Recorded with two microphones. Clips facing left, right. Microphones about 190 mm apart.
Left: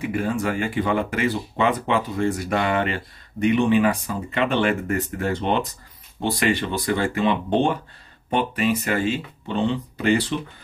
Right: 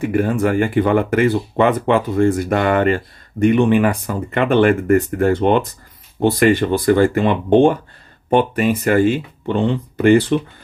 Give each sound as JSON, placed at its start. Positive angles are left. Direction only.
{"t": 0.0, "sound": "speech", "side_deg": -55}